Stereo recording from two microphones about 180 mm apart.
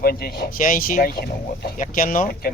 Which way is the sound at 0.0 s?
55° left (ahead or behind).